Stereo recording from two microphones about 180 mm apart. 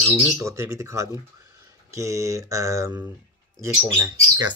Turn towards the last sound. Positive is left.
turn(degrees=-20)  # may be behind; listen again after turning